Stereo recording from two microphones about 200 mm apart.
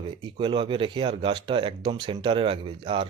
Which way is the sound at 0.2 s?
25° right (ahead or behind).